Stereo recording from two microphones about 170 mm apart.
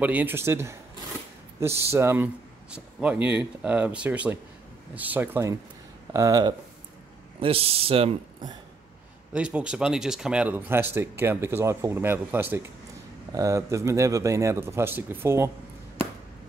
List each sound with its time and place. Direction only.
0.0 s speech: 10° right (ahead or behind)
7.3 s speech: 35° right (ahead or behind)
9.3 s speech: 5° right (ahead or behind)